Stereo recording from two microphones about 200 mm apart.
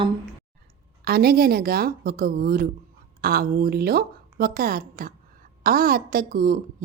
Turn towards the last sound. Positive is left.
turn(degrees=-45)  # may be behind; listen again after turning